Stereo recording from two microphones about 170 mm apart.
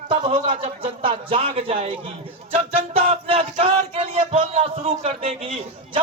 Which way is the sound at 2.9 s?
35° right (ahead or behind).